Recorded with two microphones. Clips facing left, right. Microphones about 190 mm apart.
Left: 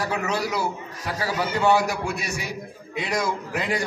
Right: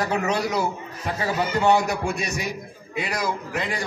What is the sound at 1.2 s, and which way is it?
Speech, 20° right (ahead or behind).